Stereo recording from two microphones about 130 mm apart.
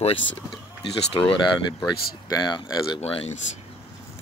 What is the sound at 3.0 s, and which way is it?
Speech, 50° left (ahead or behind).